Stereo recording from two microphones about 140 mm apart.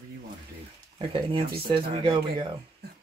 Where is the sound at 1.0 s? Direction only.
35° right (ahead or behind).